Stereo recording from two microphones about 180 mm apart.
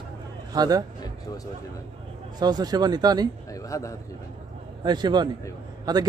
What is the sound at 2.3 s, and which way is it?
Speech, 25° right (ahead or behind).